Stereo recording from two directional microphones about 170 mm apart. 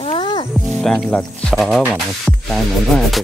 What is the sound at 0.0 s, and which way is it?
Music, 30° left (ahead or behind).